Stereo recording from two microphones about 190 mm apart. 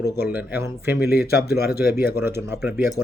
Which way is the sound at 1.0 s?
55° left (ahead or behind).